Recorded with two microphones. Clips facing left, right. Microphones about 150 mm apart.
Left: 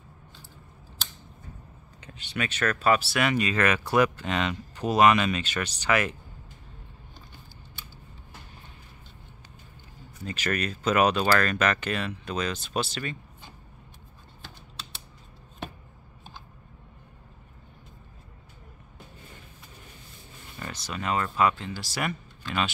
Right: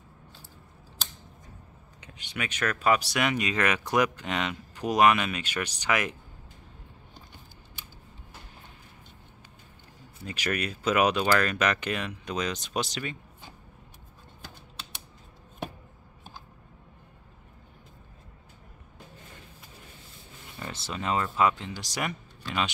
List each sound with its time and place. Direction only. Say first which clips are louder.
2.0 s speech: left 3 dB; 10° right (ahead or behind)
10.2 s speech: left 1 dB; 10° right (ahead or behind)
20.5 s speech: even; 25° right (ahead or behind)